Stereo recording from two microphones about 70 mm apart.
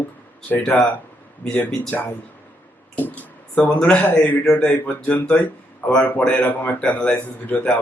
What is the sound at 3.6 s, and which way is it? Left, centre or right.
Speech, centre.